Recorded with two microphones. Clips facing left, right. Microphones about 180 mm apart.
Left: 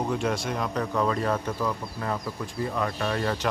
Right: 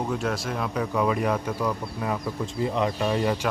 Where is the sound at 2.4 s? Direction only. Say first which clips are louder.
Right 5 dB; 20° right (ahead or behind).